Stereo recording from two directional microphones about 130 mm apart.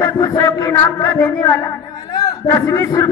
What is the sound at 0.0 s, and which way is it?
A man's voice, 25° left (ahead or behind).